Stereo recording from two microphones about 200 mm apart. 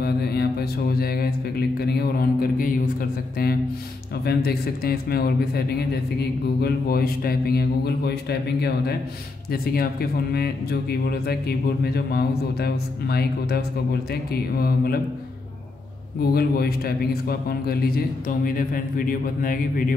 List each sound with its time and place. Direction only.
0.0 s a man's voice: 55° left (ahead or behind)
16.2 s a man's voice: 50° left (ahead or behind)